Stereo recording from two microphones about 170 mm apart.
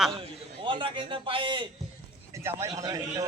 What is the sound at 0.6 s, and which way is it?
A man's voice, 30° right (ahead or behind).